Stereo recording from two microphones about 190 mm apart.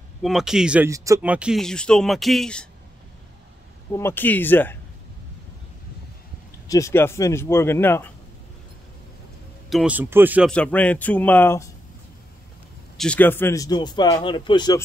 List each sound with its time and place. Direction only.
0.2 s speech: centre (ahead or behind)
0.8 s speech: 15° right (ahead or behind); by 2.7 s 5° left (ahead or behind)
3.9 s speech: 10° left (ahead or behind)
6.7 s speech: 15° left (ahead or behind)
9.7 s speech: 5° right (ahead or behind)
10.5 s speech: 5° left (ahead or behind)
12.9 s speech: 5° left (ahead or behind); by 14.8 s 25° left (ahead or behind)